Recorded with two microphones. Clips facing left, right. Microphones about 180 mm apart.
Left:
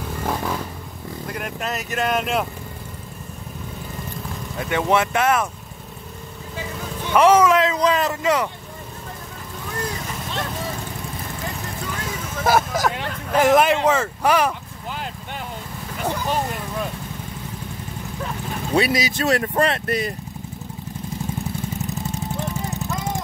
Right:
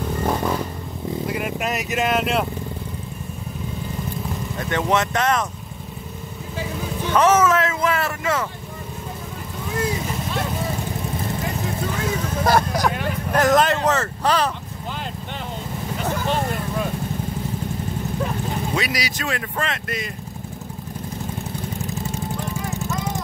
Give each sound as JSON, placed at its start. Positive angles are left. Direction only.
{"t": 0.1, "sound": "a sound", "side_deg": -5}
{"t": 1.2, "sound": "speech", "side_deg": -5}
{"t": 4.6, "sound": "speech", "side_deg": 10}
{"t": 7.1, "sound": "speech", "side_deg": 15}
{"t": 12.4, "sound": "speech", "side_deg": 5}
{"t": 16.0, "sound": "vehicle", "side_deg": 10}
{"t": 18.8, "sound": "speech", "side_deg": 30}
{"t": 19.2, "sound": "speech", "side_deg": 40}